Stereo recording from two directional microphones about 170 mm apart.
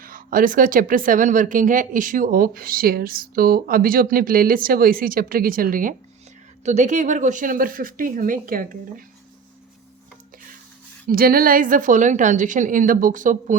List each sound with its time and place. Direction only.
0.0 s speech: 55° right (ahead or behind)
6.7 s a woman's voice: 45° right (ahead or behind)
11.1 s a woman's voice: 60° right (ahead or behind)